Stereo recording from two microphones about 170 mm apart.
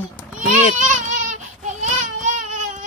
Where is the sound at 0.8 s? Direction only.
45° right (ahead or behind).